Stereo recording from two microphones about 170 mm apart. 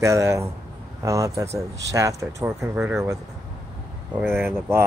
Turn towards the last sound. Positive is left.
turn(degrees=-15)  # may be behind; listen again after turning